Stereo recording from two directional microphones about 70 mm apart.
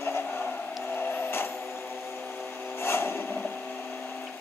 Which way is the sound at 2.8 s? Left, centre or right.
Left.